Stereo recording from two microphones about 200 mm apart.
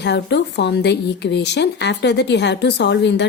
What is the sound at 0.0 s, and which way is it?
Speech, 60° left (ahead or behind).